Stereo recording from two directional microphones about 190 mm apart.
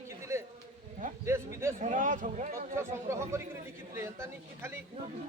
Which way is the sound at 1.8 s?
40° right (ahead or behind).